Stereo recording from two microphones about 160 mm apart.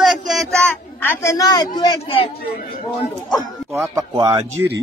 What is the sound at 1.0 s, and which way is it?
A woman's voice, 15° left (ahead or behind).